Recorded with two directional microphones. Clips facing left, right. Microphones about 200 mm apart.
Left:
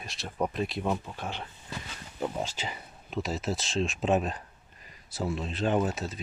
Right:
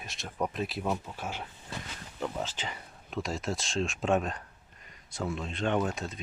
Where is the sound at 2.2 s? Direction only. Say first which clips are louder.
Left 2 dB; 15° left (ahead or behind).